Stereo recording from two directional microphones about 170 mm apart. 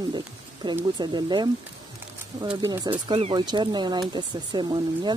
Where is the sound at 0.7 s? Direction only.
25° right (ahead or behind).